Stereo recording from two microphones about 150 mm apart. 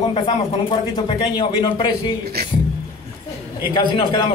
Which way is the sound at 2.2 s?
90° right.